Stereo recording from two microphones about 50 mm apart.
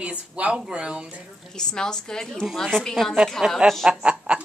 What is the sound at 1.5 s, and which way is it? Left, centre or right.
A woman's voice, centre.